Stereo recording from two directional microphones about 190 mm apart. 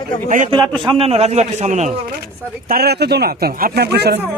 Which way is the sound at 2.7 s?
55° right (ahead or behind).